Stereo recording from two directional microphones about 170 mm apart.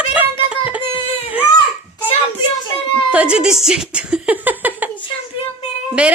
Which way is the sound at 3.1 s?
5° right (ahead or behind).